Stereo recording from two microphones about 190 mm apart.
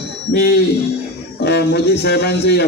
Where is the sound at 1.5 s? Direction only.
60° left (ahead or behind).